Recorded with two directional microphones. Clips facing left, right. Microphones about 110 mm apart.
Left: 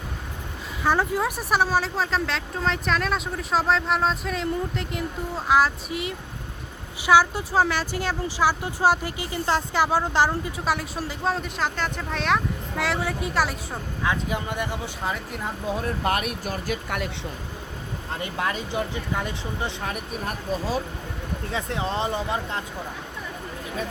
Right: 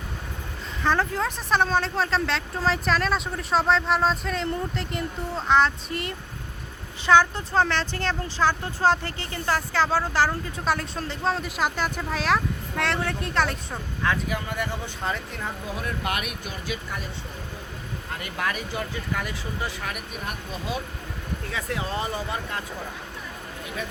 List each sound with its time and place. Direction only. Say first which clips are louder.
0.8 s speech: left 1 dB; 10° left (ahead or behind)
10.7 s speech: right 1 dB; 5° left (ahead or behind)
14.0 s speech: even; 20° left (ahead or behind)
15.0 s speech: even; 10° left (ahead or behind)
15.6 s speech: left 7 dB; 30° left (ahead or behind)
18.1 s speech: left 2 dB; 25° left (ahead or behind)